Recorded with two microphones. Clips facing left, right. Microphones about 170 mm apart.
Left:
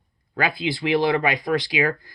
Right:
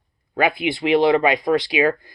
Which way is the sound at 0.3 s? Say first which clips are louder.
Right 4 dB; 25° right (ahead or behind).